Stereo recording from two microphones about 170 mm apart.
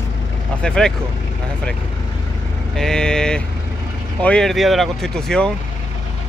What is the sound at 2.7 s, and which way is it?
Speech, 5° left (ahead or behind).